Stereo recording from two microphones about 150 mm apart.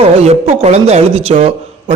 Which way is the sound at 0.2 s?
45° right (ahead or behind).